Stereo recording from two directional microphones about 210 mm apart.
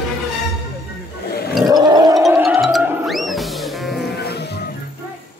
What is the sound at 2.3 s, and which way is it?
Music, centre (ahead or behind).